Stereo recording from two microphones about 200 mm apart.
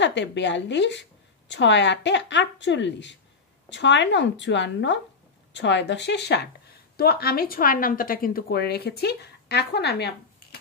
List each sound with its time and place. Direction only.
0.0 s a woman's voice: 65° left (ahead or behind)